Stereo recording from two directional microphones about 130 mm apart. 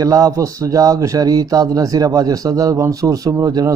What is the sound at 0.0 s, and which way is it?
Speech, 25° right (ahead or behind).